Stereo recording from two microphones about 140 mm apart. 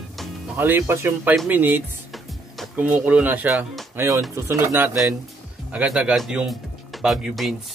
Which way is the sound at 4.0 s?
20° right (ahead or behind).